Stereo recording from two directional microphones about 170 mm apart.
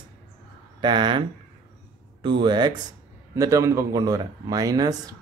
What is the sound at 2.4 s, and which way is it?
Speech, 25° right (ahead or behind).